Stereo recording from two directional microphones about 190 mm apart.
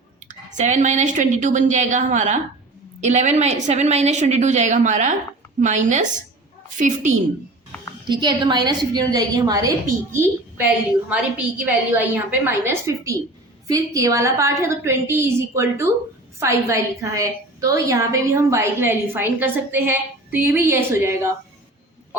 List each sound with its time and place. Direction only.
0.3 s a woman's voice: 40° right (ahead or behind)
8.0 s a woman's voice: 25° right (ahead or behind)